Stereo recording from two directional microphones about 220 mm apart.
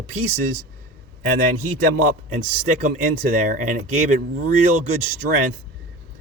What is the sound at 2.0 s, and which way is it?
Speech, 35° right (ahead or behind).